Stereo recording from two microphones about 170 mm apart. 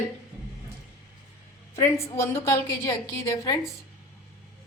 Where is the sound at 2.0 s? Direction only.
15° left (ahead or behind).